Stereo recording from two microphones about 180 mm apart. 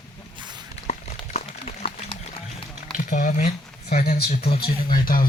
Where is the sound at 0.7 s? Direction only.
40° left (ahead or behind).